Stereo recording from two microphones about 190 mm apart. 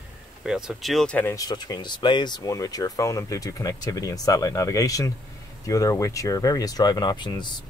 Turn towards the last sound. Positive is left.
turn(degrees=25)  # may be behind; listen again after turning